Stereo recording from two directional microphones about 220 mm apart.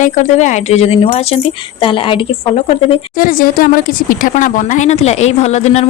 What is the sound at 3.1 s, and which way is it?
A woman's voice, 40° left (ahead or behind).